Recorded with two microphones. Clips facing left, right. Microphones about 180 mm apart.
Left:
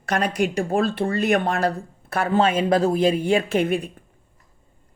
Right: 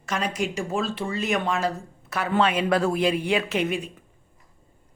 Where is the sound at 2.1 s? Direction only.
45° left (ahead or behind).